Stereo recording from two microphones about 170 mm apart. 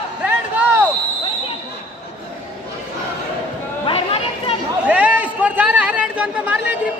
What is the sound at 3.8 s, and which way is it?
Chatter, 35° left (ahead or behind).